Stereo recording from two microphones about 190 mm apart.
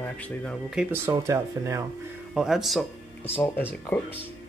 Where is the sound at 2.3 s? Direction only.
Centre (ahead or behind).